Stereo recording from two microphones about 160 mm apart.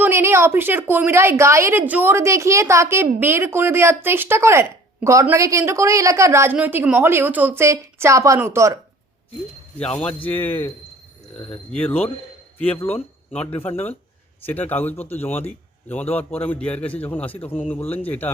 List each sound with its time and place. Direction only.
0.0 s a woman's voice: 15° right (ahead or behind)
9.7 s a man's voice: 10° left (ahead or behind)